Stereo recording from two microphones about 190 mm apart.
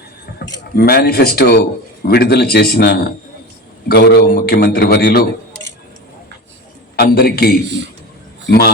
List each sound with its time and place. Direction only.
0.3 s a man's voice: 55° left (ahead or behind)
6.9 s a man's voice: 55° left (ahead or behind)